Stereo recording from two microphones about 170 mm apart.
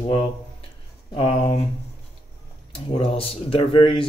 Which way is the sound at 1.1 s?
35° left (ahead or behind).